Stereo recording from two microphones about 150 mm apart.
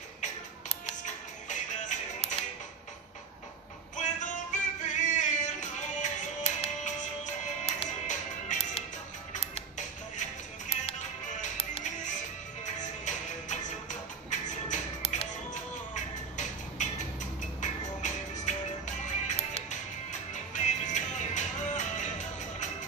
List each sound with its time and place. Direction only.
0.2 s music: 50° left (ahead or behind)
3.9 s music: 55° left (ahead or behind)